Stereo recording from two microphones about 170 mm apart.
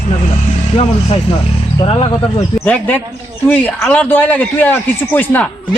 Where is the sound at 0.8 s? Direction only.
40° left (ahead or behind).